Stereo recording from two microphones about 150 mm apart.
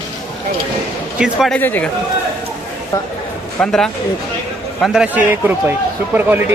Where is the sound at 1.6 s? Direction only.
10° left (ahead or behind).